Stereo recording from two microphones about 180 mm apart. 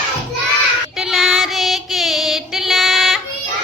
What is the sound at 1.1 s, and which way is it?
Child singing, centre (ahead or behind).